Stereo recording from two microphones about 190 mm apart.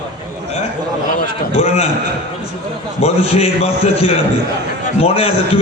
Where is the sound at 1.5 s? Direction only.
35° left (ahead or behind).